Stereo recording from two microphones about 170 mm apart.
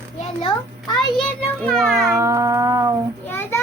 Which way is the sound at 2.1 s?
15° right (ahead or behind).